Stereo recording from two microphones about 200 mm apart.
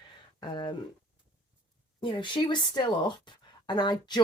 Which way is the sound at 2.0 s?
25° left (ahead or behind).